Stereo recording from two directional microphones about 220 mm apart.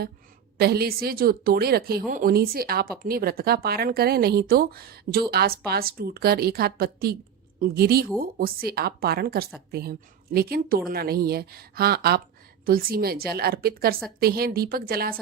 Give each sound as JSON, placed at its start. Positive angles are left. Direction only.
{"t": 0.6, "sound": "a woman's voice", "side_deg": -45}